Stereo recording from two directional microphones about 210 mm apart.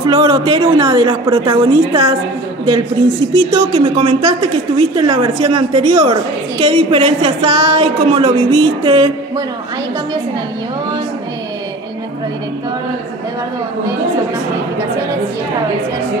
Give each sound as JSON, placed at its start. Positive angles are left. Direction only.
{"t": 0.0, "sound": "a woman's voice", "side_deg": -25}
{"t": 3.3, "sound": "a woman's voice", "side_deg": -25}